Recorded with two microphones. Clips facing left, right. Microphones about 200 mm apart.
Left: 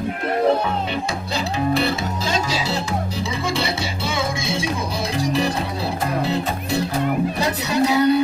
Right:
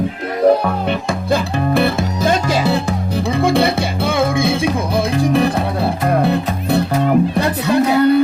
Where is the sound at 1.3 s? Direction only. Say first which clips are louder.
Right 5 dB; 55° right (ahead or behind).